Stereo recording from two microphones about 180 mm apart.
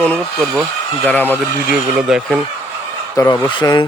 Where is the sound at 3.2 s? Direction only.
20° left (ahead or behind).